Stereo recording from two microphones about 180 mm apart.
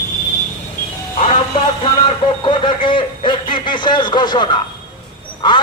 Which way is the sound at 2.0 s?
25° left (ahead or behind).